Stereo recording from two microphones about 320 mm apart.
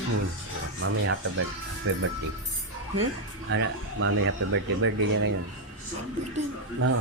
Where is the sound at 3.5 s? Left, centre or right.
Right.